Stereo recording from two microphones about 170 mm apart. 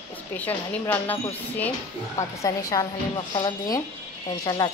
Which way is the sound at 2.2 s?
20° left (ahead or behind).